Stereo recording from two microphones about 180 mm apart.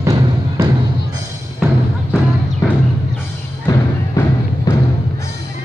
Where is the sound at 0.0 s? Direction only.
15° right (ahead or behind).